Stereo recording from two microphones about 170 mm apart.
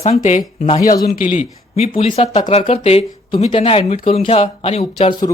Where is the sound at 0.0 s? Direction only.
40° left (ahead or behind).